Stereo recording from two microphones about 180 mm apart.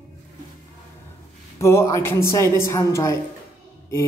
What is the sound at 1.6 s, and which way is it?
Speech, 15° left (ahead or behind).